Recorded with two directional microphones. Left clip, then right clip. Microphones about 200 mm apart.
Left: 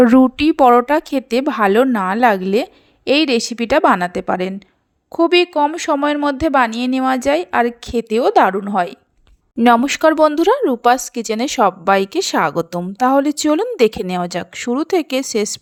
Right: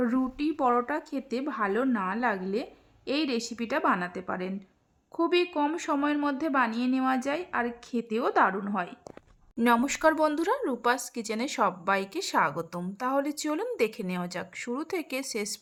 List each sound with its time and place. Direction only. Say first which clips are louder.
0.0 s a woman's voice: left 17 dB; 45° left (ahead or behind)